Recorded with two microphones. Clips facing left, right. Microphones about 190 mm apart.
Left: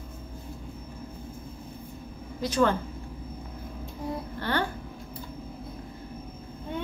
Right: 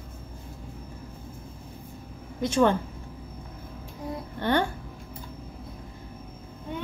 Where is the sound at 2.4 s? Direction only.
25° right (ahead or behind).